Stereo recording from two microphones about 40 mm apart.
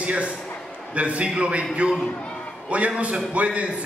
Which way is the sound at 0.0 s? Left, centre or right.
Right.